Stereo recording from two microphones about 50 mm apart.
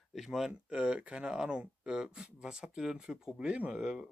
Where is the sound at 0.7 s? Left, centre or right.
Right.